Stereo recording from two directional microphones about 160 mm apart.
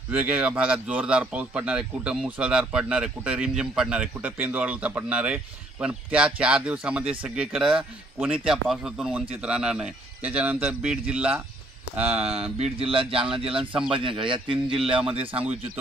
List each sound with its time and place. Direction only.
0.1 s speech: 10° right (ahead or behind)
12.0 s speech: 40° right (ahead or behind)